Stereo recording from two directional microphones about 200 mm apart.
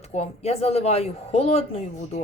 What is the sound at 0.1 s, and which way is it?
A man's voice, 35° left (ahead or behind).